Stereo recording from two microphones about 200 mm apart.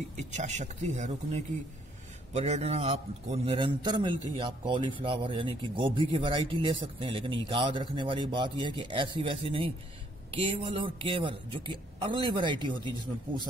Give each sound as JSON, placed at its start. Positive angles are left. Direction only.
{"t": 0.2, "sound": "speech", "side_deg": -35}